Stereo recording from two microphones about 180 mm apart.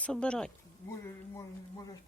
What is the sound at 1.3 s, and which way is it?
Speech, 20° left (ahead or behind).